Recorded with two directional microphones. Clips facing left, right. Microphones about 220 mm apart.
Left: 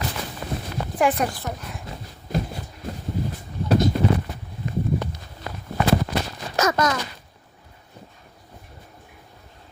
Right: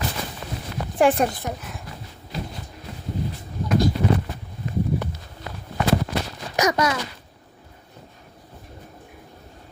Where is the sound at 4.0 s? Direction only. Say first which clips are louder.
Left 2 dB; 50° left (ahead or behind).